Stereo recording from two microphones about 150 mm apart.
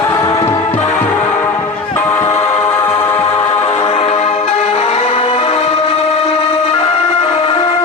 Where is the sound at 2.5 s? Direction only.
40° left (ahead or behind).